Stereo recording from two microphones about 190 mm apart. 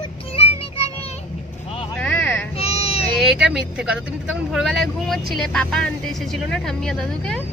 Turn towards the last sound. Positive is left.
turn(degrees=5)  # may be behind; listen again after turning